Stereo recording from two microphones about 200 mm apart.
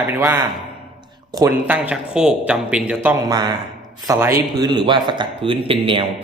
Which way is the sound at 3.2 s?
20° right (ahead or behind).